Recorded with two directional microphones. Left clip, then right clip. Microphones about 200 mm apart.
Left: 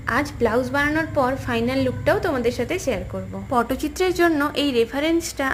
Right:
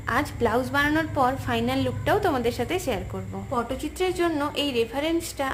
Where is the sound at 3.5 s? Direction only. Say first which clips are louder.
Left 7 dB; 25° left (ahead or behind).